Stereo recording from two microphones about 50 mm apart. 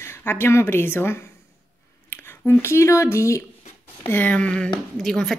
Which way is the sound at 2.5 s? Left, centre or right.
Left.